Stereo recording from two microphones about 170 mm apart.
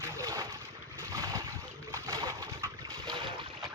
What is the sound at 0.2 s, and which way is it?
Boat, 20° right (ahead or behind).